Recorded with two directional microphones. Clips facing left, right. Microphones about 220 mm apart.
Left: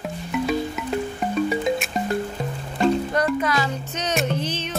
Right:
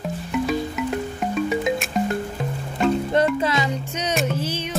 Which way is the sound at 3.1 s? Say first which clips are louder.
Right 2 dB; 25° right (ahead or behind).